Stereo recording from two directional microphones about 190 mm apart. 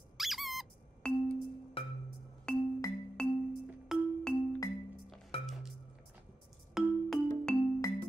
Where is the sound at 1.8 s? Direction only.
30° left (ahead or behind).